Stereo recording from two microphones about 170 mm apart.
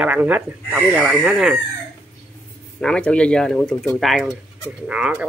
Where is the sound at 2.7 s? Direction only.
5° left (ahead or behind).